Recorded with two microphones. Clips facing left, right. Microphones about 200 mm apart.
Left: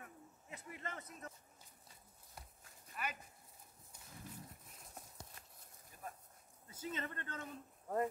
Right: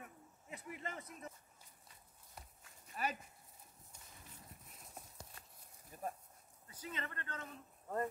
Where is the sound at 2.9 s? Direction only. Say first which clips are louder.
Right 4 dB; 35° right (ahead or behind).